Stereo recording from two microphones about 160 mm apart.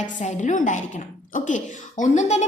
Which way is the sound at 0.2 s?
50° left (ahead or behind).